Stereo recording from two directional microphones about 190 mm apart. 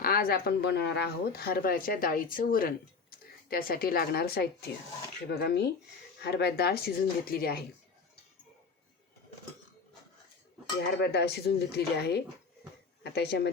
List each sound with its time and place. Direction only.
0.0 s speech: 50° left (ahead or behind)
5.4 s dishes: 60° left (ahead or behind)
10.8 s dishes: 60° left (ahead or behind)